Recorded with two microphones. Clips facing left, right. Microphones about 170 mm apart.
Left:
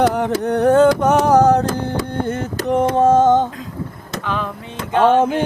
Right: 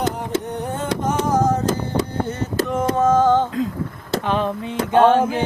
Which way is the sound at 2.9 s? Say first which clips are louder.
Left 2 dB; 25° left (ahead or behind).